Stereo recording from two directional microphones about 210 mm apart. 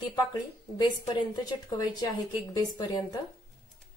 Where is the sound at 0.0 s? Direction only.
20° left (ahead or behind).